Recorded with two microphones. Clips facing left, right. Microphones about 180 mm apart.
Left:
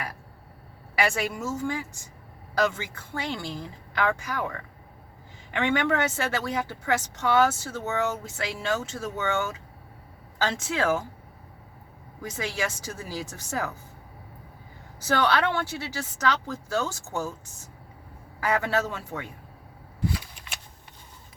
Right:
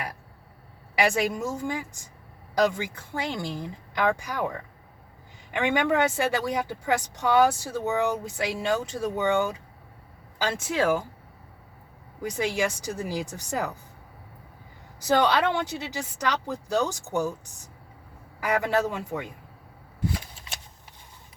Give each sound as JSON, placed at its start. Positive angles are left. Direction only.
{"t": 0.9, "sound": "speech", "side_deg": -15}
{"t": 12.2, "sound": "speech", "side_deg": -15}
{"t": 15.0, "sound": "speech", "side_deg": -15}